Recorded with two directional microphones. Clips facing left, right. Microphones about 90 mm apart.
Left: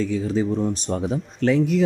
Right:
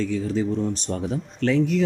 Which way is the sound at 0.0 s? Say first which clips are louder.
Left 2 dB; 15° left (ahead or behind).